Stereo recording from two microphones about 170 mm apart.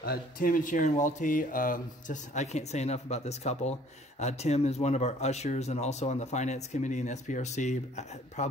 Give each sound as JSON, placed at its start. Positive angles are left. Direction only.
{"t": 0.0, "sound": "speech", "side_deg": 60}